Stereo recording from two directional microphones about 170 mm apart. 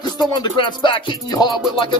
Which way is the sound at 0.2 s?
25° left (ahead or behind).